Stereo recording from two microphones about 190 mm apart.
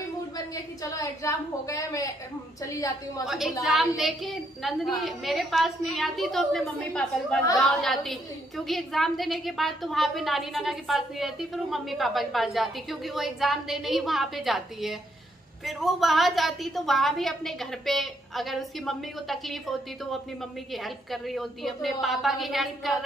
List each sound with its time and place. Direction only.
0.8 s a woman's voice: 15° left (ahead or behind)
3.3 s a woman's voice: 5° right (ahead or behind)
20.7 s a woman's voice: centre (ahead or behind)